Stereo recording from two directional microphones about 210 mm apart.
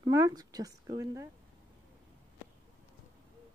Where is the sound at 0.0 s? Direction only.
15° right (ahead or behind).